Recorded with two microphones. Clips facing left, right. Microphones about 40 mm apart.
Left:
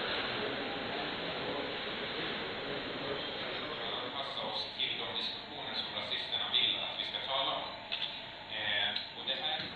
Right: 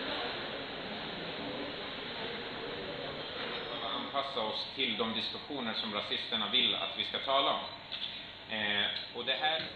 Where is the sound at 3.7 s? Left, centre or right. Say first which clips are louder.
Right 1 dB; right.